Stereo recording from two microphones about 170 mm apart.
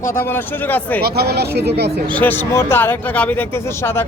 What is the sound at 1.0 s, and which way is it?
Speech, 70° right (ahead or behind).